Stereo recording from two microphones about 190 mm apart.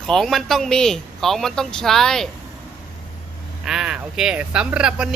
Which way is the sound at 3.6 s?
5° right (ahead or behind).